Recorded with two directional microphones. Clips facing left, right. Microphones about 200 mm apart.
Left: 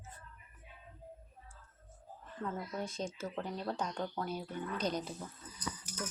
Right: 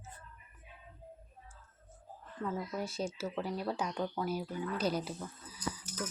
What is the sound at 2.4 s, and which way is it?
Speech, 5° right (ahead or behind).